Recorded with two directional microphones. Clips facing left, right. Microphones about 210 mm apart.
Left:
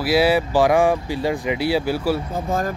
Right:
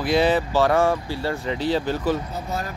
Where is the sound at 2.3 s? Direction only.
50° left (ahead or behind).